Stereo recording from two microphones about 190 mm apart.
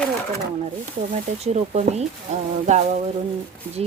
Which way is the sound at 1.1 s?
35° right (ahead or behind).